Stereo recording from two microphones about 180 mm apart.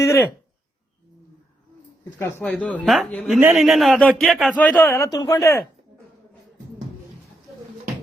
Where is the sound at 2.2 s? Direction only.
15° left (ahead or behind).